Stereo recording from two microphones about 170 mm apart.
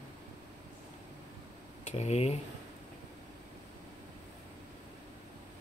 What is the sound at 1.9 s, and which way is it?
Speech, 40° left (ahead or behind).